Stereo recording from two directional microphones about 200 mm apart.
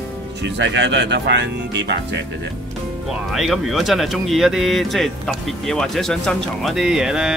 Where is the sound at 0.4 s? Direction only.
65° right (ahead or behind).